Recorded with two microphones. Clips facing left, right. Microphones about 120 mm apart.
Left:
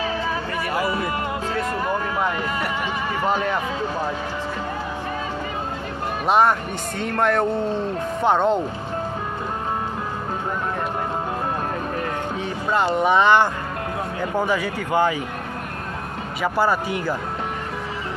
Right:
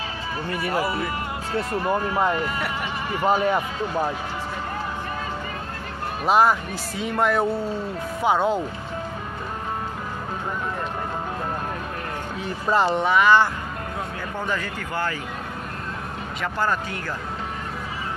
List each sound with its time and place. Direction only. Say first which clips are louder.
3.3 s speech: right 3 dB; 10° right (ahead or behind)
6.2 s speech: even; centre (ahead or behind)
12.4 s speech: right 1 dB; centre (ahead or behind)
13.1 s speech: left 1 dB; 20° left (ahead or behind)
16.5 s speech: left 4 dB; 10° left (ahead or behind)